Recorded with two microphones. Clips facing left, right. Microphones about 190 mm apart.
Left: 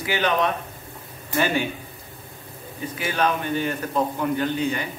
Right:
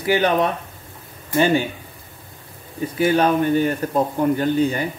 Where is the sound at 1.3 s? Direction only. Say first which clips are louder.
Right 6 dB; 30° right (ahead or behind).